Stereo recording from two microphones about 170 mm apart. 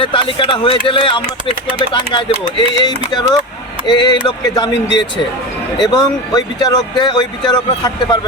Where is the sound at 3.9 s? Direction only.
25° left (ahead or behind).